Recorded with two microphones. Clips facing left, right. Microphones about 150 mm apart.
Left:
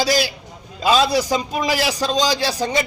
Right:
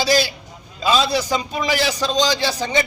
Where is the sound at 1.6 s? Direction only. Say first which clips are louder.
Right 1 dB; 5° left (ahead or behind).